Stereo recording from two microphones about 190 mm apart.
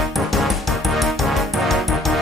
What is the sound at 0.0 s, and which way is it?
Music, centre (ahead or behind).